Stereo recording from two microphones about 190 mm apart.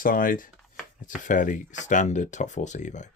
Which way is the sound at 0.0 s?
45° left (ahead or behind).